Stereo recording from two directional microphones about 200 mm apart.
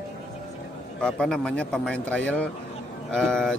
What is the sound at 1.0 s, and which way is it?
Speech, 5° left (ahead or behind).